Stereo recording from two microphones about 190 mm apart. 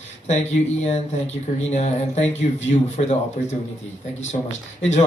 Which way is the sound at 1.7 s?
35° left (ahead or behind).